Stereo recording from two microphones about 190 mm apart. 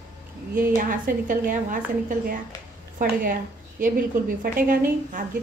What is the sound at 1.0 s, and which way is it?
A woman's voice, 45° right (ahead or behind).